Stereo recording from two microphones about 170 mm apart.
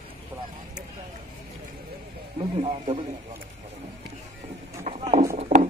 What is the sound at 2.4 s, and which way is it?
Speech, 35° right (ahead or behind).